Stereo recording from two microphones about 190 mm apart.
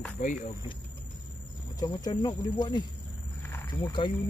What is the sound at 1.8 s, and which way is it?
Speech, 20° left (ahead or behind).